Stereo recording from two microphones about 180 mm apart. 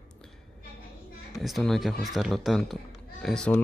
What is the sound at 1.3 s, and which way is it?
Speech, centre (ahead or behind).